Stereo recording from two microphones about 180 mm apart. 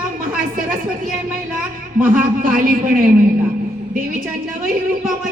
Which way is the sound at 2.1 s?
50° right (ahead or behind).